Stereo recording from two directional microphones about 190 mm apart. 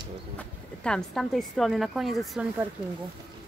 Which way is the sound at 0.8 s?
5° left (ahead or behind).